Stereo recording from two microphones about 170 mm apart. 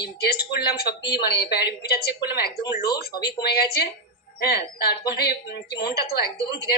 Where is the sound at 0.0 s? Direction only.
65° left (ahead or behind).